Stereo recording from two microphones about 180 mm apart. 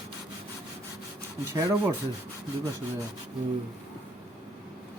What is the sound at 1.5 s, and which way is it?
Speech, 15° right (ahead or behind).